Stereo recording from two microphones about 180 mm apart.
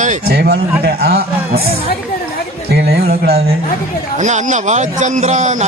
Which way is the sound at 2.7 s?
65° right (ahead or behind).